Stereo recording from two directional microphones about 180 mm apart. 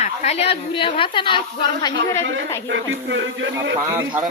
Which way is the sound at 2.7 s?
90° right.